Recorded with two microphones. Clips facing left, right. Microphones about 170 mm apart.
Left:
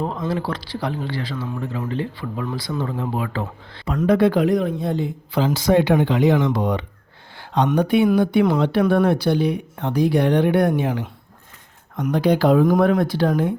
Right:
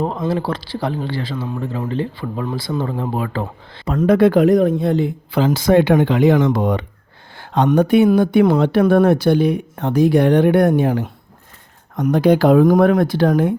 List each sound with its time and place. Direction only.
0.0 s speech: 35° right (ahead or behind)
4.8 s a woman's voice: 75° right (ahead or behind); by 13.5 s 60° right (ahead or behind)